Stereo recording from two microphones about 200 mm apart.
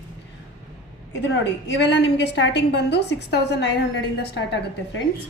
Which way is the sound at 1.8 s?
60° left (ahead or behind).